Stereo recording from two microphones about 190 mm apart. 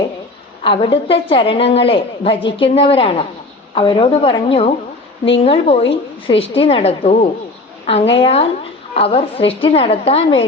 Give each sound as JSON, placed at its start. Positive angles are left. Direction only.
{"t": 0.6, "sound": "a woman's voice", "side_deg": 25}